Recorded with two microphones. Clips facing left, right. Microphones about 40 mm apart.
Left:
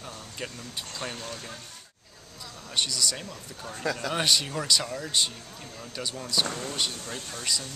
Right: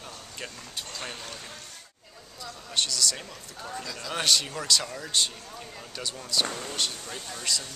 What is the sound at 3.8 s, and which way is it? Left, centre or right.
Speech, left.